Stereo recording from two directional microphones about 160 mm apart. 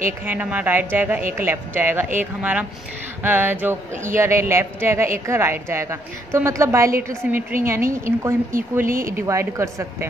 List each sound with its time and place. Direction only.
0.2 s a woman's voice: 10° right (ahead or behind)
8.8 s speech: 60° right (ahead or behind)
9.1 s a woman's voice: 15° right (ahead or behind)